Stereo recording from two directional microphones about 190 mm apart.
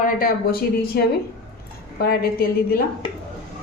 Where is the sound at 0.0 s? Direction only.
50° left (ahead or behind).